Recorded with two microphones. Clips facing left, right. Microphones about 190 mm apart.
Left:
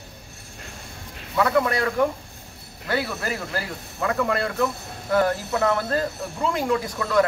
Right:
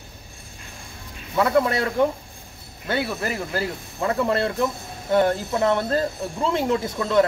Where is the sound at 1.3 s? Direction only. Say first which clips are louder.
Right 1 dB; 25° right (ahead or behind).